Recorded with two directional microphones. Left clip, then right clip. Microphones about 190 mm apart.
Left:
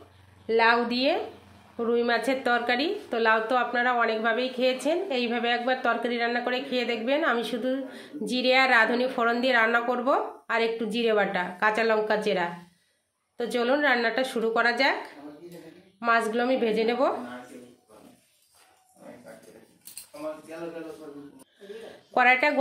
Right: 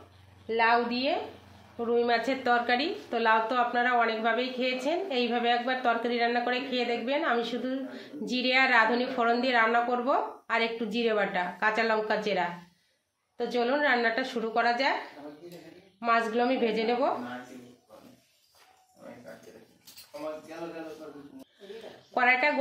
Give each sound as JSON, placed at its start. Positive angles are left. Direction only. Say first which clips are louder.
{"t": 0.5, "sound": "a woman's voice", "louder": "left 3 dB", "side_deg": 30}
{"t": 16.0, "sound": "a woman's voice", "louder": "left 2 dB", "side_deg": 20}
{"t": 22.1, "sound": "a woman's voice", "louder": "left 3 dB", "side_deg": 25}